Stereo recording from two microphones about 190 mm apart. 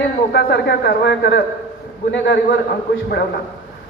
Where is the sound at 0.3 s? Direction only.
60° left (ahead or behind).